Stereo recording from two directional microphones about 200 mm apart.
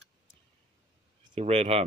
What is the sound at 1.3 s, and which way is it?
Speech, 30° right (ahead or behind).